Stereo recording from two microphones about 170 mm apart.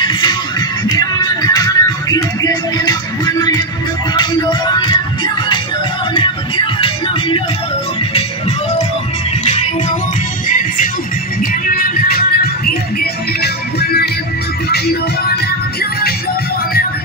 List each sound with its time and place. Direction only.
0.1 s music: 25° left (ahead or behind)
9.4 s music: 40° left (ahead or behind)
11.6 s music: 60° left (ahead or behind)